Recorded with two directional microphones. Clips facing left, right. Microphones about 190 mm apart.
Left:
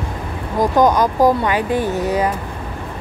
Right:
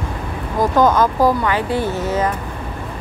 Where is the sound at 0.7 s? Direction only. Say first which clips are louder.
Even; 15° left (ahead or behind).